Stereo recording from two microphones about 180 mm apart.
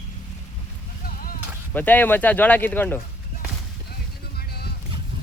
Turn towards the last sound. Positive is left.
turn(degrees=60)  # may be behind; listen again after turning